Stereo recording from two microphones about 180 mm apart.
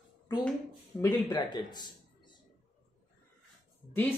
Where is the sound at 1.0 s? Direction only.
25° left (ahead or behind).